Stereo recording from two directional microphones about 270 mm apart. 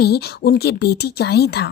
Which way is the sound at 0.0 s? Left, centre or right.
Left.